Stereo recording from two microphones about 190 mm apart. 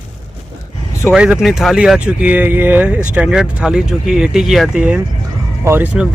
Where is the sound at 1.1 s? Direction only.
5° right (ahead or behind).